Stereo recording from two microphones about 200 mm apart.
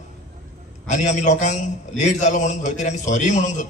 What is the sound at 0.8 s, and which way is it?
A man's voice, 35° left (ahead or behind).